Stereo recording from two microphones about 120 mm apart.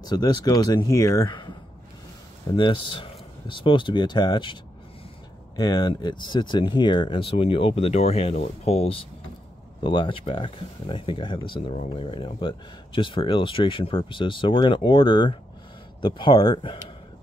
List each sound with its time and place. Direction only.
0.0 s speech: 35° left (ahead or behind)
2.5 s speech: 45° left (ahead or behind)
5.6 s speech: 35° left (ahead or behind); by 9.0 s 55° left (ahead or behind)
9.8 s speech: 45° left (ahead or behind)